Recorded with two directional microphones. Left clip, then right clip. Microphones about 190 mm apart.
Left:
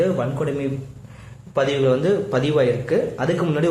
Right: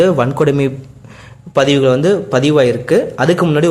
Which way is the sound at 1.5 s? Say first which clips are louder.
Right 7 dB; 40° right (ahead or behind).